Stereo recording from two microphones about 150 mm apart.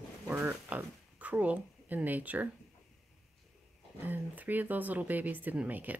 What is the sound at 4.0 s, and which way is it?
Speech, 10° right (ahead or behind).